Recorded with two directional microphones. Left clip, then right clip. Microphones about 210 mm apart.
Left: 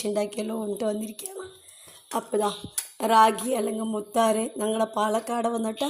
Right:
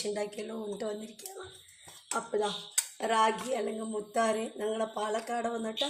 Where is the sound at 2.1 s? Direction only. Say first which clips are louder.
Left 6 dB; 45° left (ahead or behind).